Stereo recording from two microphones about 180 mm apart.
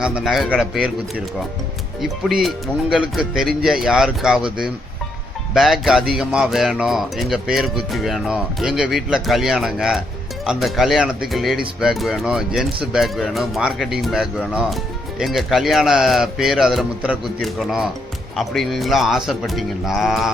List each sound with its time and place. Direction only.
0.0 s speech: centre (ahead or behind)
2.0 s speech: centre (ahead or behind)
5.5 s speech: centre (ahead or behind)